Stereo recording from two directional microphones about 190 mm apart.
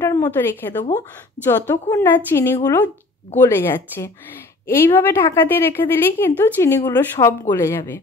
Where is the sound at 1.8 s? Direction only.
15° left (ahead or behind).